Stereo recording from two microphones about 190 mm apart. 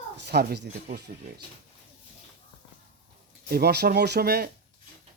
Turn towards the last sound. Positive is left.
turn(degrees=-55)  # may be behind; listen again after turning